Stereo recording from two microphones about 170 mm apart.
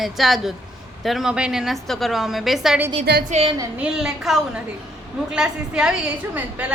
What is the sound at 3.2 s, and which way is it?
Speech, 40° right (ahead or behind).